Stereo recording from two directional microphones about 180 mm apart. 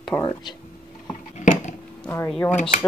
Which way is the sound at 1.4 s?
45° left (ahead or behind).